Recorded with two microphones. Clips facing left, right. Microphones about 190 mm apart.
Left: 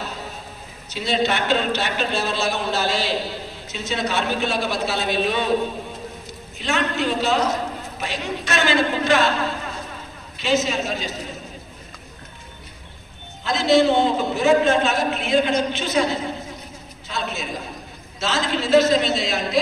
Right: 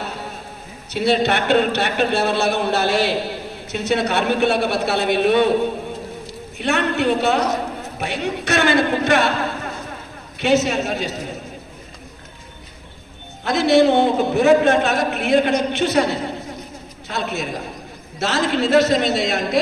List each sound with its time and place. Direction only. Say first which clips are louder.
0.9 s a man's voice: right 4 dB; 60° right (ahead or behind)
6.6 s a man's voice: right 4 dB; 60° right (ahead or behind)
10.4 s a man's voice: right 4 dB; 60° right (ahead or behind)
13.4 s a man's voice: right 3 dB; 60° right (ahead or behind)